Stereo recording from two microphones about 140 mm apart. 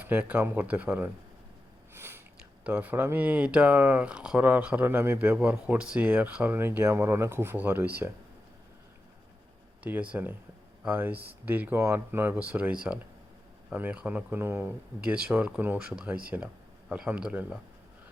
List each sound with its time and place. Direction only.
0.0 s speech: 10° right (ahead or behind)
2.0 s a sound: 15° right (ahead or behind)
2.6 s speech: 10° right (ahead or behind)
9.8 s speech: 10° right (ahead or behind)